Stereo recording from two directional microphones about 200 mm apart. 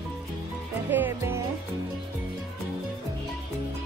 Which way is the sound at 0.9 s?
10° right (ahead or behind).